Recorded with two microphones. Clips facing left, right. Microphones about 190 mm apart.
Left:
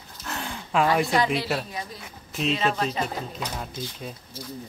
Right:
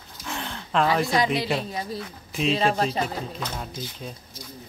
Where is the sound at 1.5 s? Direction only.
5° left (ahead or behind).